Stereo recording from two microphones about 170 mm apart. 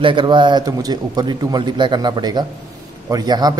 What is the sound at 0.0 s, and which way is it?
A man's voice, 30° right (ahead or behind).